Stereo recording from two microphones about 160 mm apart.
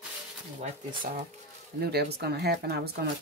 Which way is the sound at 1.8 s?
85° right.